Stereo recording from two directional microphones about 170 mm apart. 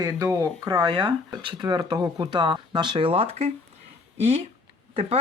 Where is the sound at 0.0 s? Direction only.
20° right (ahead or behind); by 3.5 s 35° right (ahead or behind).